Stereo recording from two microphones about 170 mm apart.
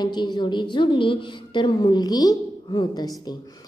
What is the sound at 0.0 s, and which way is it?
A woman's voice, 25° left (ahead or behind).